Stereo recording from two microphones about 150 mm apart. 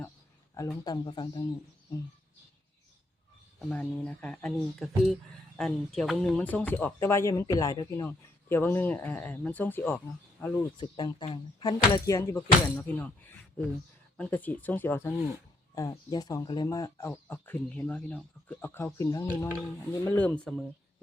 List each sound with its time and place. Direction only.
0.9 s speech: 30° left (ahead or behind)
3.6 s speech: 10° left (ahead or behind)
6.4 s speech: 10° left (ahead or behind)
10.8 s speech: 30° left (ahead or behind)
14.2 s speech: 10° left (ahead or behind)